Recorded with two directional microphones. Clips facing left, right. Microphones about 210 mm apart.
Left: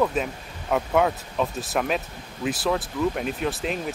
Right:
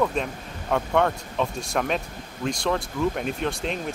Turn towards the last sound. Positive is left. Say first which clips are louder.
# left 1 dB
turn(degrees=5)  # may be behind; listen again after turning